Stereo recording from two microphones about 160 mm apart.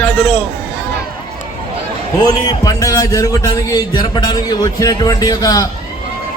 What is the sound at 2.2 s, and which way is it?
A man's voice, 25° left (ahead or behind).